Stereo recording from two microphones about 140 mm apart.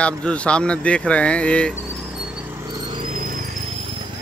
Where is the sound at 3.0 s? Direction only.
75° right (ahead or behind).